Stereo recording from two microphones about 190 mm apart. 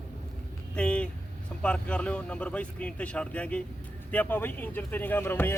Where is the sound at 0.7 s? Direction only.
5° left (ahead or behind).